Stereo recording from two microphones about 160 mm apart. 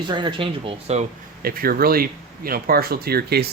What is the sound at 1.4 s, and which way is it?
Speech, 70° right (ahead or behind).